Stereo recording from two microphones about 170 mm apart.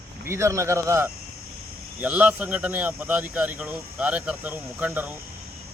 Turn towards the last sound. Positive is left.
turn(degrees=-10)  # may be behind; listen again after turning